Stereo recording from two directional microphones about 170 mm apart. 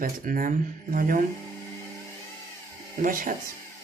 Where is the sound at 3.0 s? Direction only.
55° right (ahead or behind).